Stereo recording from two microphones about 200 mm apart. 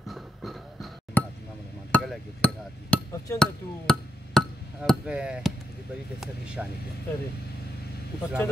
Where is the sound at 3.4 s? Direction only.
Centre (ahead or behind).